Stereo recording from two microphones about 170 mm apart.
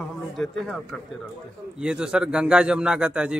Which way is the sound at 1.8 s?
5° right (ahead or behind).